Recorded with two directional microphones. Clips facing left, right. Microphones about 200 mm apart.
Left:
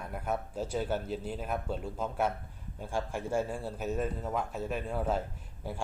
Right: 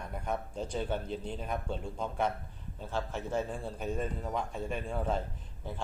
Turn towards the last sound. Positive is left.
turn(degrees=10)  # may be behind; listen again after turning